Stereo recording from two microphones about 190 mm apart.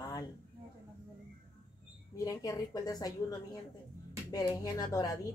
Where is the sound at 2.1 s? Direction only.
15° left (ahead or behind).